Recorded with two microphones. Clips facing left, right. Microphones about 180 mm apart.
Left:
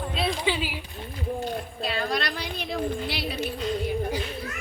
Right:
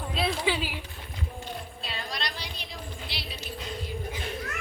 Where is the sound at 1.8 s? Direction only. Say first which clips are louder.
Left 10 dB; 55° left (ahead or behind).